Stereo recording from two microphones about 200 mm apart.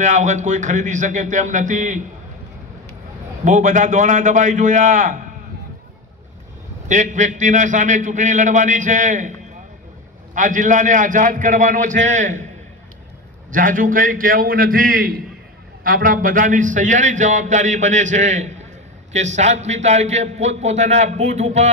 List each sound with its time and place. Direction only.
0.0 s a man's voice: 35° right (ahead or behind)
3.4 s a man's voice: 40° right (ahead or behind)
6.9 s a man's voice: 40° right (ahead or behind)
10.3 s a man's voice: 40° right (ahead or behind)
13.5 s a man's voice: 40° right (ahead or behind)